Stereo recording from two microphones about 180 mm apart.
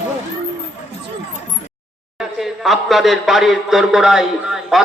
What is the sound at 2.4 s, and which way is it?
Speech, centre (ahead or behind).